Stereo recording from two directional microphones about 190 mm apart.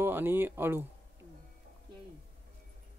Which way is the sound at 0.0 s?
10° right (ahead or behind).